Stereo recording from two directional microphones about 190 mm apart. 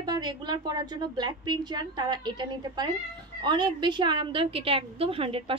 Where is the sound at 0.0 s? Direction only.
20° right (ahead or behind).